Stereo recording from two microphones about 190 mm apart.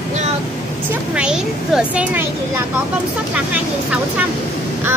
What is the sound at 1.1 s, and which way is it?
Speech, 5° right (ahead or behind).